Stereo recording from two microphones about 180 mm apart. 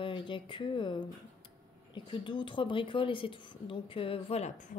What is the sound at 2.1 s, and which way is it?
A woman's voice, 25° left (ahead or behind).